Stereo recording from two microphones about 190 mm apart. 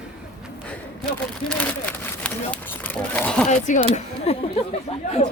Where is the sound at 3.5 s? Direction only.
40° left (ahead or behind).